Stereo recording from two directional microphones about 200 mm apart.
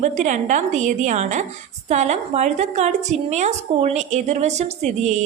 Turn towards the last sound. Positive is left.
turn(degrees=-35)  # may be behind; listen again after turning